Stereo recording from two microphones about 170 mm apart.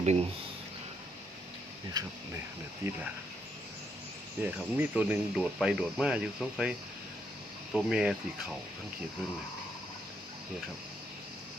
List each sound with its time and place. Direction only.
0.0 s speech: 40° right (ahead or behind)
2.0 s speech: 25° right (ahead or behind)
4.4 s speech: 10° right (ahead or behind)